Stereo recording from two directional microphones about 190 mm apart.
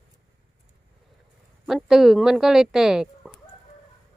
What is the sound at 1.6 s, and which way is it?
Speech, centre (ahead or behind).